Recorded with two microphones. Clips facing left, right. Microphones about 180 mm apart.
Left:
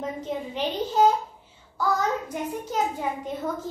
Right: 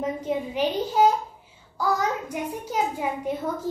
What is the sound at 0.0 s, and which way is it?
A child's voice, 10° right (ahead or behind).